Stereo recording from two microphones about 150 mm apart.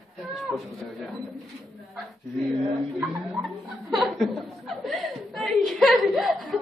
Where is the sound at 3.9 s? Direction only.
Centre (ahead or behind).